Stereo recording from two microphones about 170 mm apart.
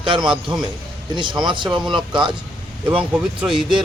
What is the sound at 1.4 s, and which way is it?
Speech, 30° right (ahead or behind).